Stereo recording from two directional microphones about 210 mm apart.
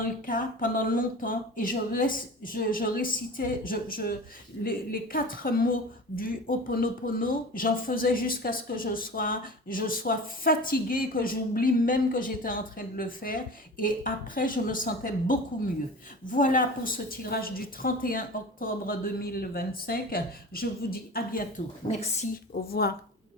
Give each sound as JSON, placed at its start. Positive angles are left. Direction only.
{"t": 0.0, "sound": "a woman's voice", "side_deg": 40}